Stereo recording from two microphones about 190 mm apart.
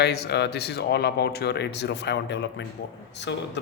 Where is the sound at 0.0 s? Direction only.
60° left (ahead or behind).